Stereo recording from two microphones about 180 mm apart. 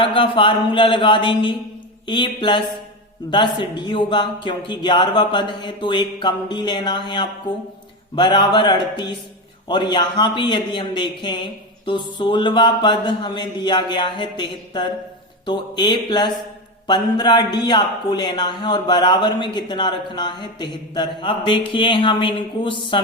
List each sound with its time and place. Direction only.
0.0 s a man's voice: 30° left (ahead or behind)